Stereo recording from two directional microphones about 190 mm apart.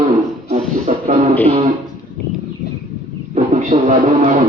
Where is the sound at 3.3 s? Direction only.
40° right (ahead or behind).